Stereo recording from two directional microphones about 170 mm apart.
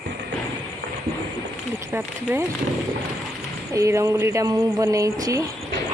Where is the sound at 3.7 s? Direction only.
20° right (ahead or behind).